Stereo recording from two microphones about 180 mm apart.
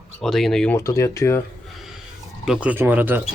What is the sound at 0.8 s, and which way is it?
Speech, 15° left (ahead or behind).